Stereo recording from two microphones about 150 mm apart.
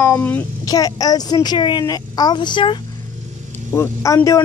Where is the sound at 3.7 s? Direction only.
20° left (ahead or behind).